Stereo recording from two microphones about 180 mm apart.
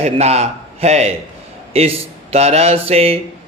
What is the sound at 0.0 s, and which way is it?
Speech, 35° right (ahead or behind).